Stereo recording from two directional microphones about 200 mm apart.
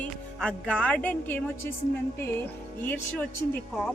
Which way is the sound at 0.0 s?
5° left (ahead or behind).